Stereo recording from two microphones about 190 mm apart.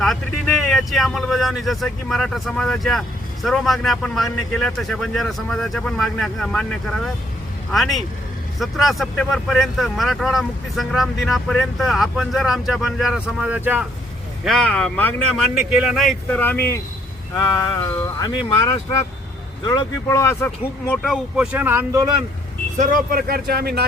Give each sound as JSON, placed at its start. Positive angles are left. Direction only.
{"t": 0.0, "sound": "speech", "side_deg": 0}
{"t": 18.2, "sound": "speech", "side_deg": 20}
{"t": 22.8, "sound": "speech", "side_deg": -45}